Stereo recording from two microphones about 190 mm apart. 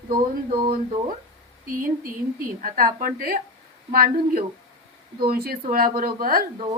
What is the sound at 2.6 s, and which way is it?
Speech, 45° right (ahead or behind).